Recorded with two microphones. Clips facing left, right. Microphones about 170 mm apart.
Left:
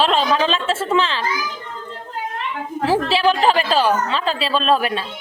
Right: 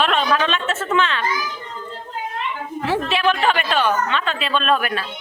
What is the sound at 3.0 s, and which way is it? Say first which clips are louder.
A woman's voice: left 1 dB; 30° left (ahead or behind).